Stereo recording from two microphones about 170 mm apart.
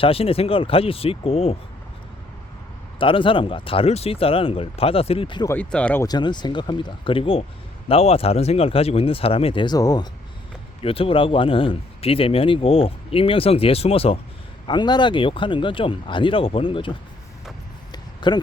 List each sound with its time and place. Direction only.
0.0 s speech: 35° left (ahead or behind)
3.0 s speech: 30° left (ahead or behind)
5.5 s speech: 10° left (ahead or behind)
6.0 s speech: 25° left (ahead or behind)
10.8 s speech: 35° left (ahead or behind)
17.9 s a sound: 25° left (ahead or behind)